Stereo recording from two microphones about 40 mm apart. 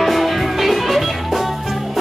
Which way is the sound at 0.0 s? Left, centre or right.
Centre.